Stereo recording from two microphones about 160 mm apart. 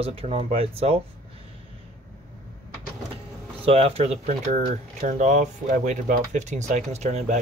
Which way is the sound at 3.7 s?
40° right (ahead or behind).